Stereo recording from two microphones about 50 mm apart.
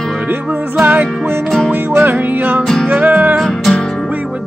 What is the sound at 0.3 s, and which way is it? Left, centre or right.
Music, right.